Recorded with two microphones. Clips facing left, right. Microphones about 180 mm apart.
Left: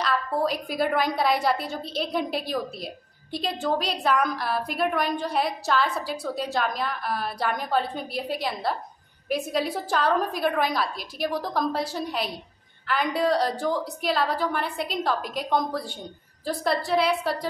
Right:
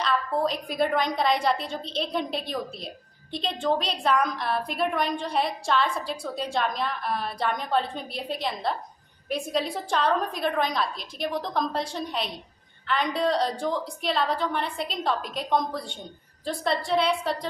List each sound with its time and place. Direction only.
0.0 s a woman's voice: 5° left (ahead or behind)